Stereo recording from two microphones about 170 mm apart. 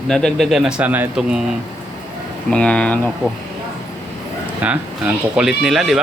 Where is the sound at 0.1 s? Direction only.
5° left (ahead or behind).